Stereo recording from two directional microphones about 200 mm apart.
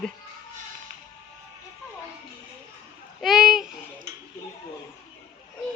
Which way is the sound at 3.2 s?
5° right (ahead or behind).